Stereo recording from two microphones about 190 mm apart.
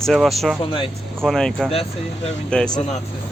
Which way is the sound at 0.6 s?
30° left (ahead or behind).